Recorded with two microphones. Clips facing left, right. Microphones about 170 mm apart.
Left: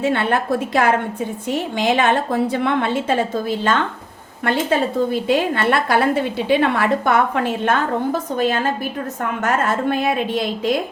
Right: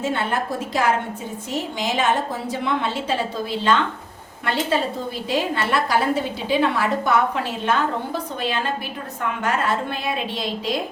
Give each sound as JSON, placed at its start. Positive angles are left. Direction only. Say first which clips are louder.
{"t": 0.0, "sound": "a woman's voice", "louder": "left 5 dB", "side_deg": 65}